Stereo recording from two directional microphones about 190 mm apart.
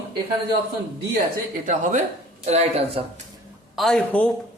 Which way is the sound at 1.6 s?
40° right (ahead or behind).